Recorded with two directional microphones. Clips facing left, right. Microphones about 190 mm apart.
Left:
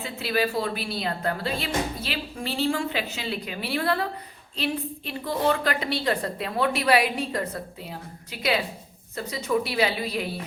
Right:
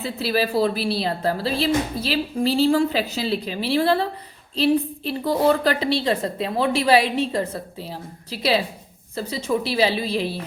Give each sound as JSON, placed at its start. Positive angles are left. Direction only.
{"t": 0.0, "sound": "a woman's voice", "side_deg": -35}